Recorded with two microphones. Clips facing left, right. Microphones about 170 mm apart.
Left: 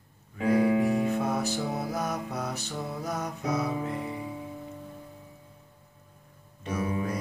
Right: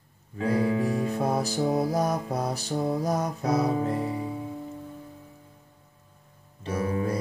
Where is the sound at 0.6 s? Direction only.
20° left (ahead or behind).